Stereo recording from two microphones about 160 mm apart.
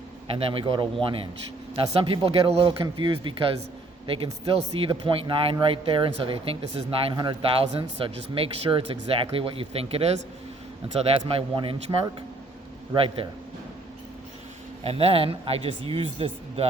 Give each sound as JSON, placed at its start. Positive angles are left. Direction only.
{"t": 0.3, "sound": "a man's voice", "side_deg": -35}
{"t": 11.3, "sound": "a man's voice", "side_deg": -35}
{"t": 14.8, "sound": "a man's voice", "side_deg": -40}